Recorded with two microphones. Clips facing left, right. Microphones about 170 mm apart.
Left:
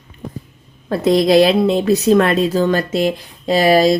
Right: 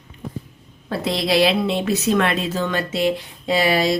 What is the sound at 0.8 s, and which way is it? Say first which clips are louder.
A woman's voice: left 9 dB; 45° left (ahead or behind).